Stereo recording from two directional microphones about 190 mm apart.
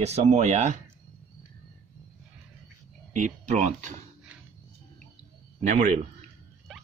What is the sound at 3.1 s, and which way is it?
Speech, 40° right (ahead or behind).